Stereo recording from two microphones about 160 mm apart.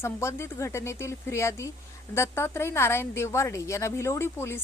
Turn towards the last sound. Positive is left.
turn(degrees=15)  # may be behind; listen again after turning